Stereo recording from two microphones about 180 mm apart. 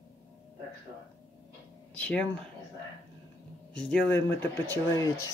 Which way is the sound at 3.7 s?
10° left (ahead or behind).